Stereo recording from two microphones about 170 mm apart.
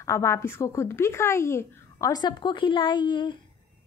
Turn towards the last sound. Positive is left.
turn(degrees=30)  # may be behind; listen again after turning